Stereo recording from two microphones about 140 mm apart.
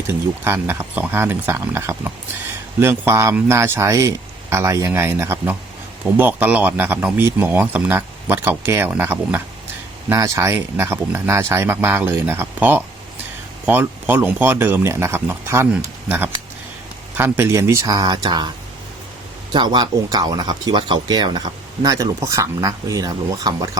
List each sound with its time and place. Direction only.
0.1 s speech: 15° right (ahead or behind); by 18.5 s 35° right (ahead or behind)
19.5 s speech: 30° right (ahead or behind)